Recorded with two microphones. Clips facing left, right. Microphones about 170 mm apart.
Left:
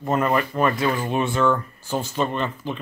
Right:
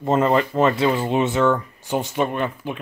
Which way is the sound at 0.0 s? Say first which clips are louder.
Right 3 dB; 25° right (ahead or behind).